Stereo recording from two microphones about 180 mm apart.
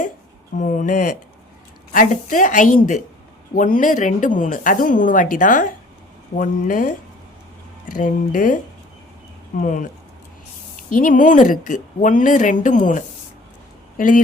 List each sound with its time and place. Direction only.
0.6 s speech: 45° left (ahead or behind)
9.6 s speech: 45° left (ahead or behind)
10.8 s speech: 50° left (ahead or behind)